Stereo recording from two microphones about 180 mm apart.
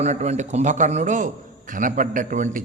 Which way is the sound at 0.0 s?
40° right (ahead or behind).